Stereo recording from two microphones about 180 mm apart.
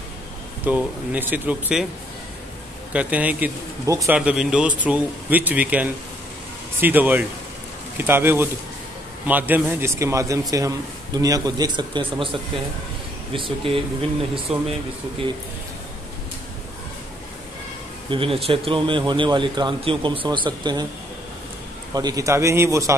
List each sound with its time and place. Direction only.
0.7 s speech: 10° right (ahead or behind)
2.9 s speech: 5° right (ahead or behind)
4.2 s a man's voice: 5° right (ahead or behind); by 14.6 s 35° right (ahead or behind)
18.1 s a man's voice: 30° right (ahead or behind)
21.9 s speech: 20° right (ahead or behind)